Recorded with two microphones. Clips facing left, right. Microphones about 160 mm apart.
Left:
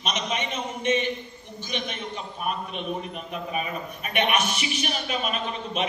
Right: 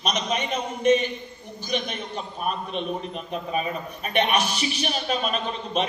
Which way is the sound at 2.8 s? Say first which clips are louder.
Right 2 dB; 30° right (ahead or behind).